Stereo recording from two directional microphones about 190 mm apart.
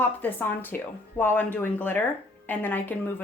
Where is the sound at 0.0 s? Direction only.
10° left (ahead or behind).